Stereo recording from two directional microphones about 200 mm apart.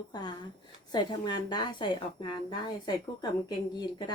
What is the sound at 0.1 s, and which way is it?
A woman's voice, 20° left (ahead or behind).